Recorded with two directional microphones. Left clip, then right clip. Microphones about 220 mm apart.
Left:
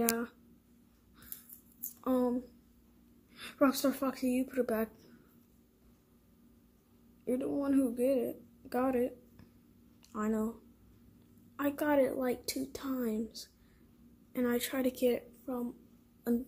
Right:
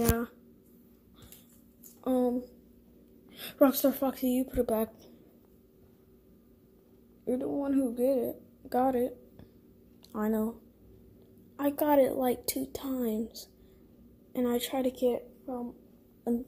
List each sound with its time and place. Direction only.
2.0 s a sound: centre (ahead or behind)
3.3 s a woman's voice: 10° right (ahead or behind)
7.2 s a woman's voice: centre (ahead or behind)
11.5 s a woman's voice: 5° right (ahead or behind)